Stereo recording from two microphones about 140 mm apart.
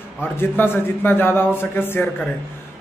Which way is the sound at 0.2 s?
15° left (ahead or behind).